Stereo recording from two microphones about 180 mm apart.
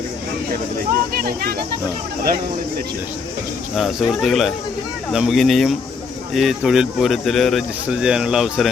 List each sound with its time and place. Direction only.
1.1 s speech: 55° right (ahead or behind)
3.8 s speech: centre (ahead or behind)